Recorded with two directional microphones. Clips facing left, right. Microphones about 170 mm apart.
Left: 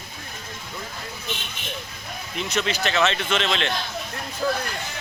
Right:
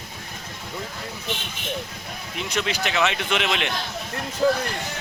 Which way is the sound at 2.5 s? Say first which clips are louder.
Left 1 dB; 10° right (ahead or behind).